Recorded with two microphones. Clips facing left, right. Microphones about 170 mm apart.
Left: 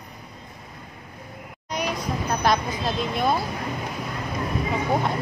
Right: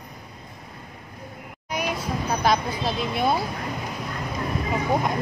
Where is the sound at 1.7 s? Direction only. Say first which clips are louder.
Even; 5° right (ahead or behind).